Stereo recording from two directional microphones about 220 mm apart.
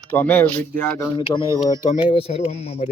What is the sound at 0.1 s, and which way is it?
Speech, 10° left (ahead or behind).